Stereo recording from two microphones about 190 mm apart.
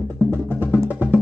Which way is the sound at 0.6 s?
10° right (ahead or behind).